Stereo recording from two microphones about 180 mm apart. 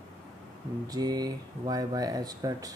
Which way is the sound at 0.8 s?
20° right (ahead or behind).